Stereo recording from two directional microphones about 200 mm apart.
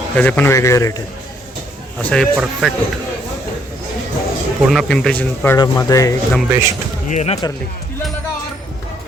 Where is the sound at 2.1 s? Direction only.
Centre (ahead or behind).